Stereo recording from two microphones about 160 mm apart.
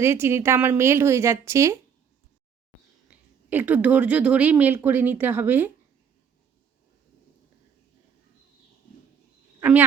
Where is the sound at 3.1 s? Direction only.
10° right (ahead or behind).